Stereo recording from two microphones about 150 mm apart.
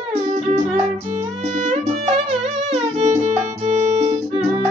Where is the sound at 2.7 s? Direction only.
45° right (ahead or behind).